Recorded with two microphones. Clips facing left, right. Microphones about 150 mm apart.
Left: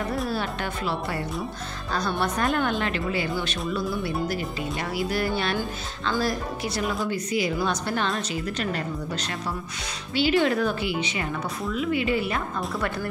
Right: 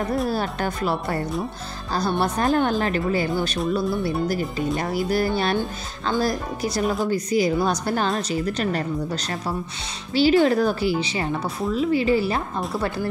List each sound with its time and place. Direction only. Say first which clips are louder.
0.3 s speech: right 4 dB; 40° right (ahead or behind)
10.1 s speech: right 5 dB; 40° right (ahead or behind)